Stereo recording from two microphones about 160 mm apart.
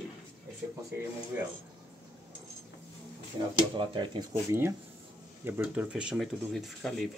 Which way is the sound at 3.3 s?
30° right (ahead or behind).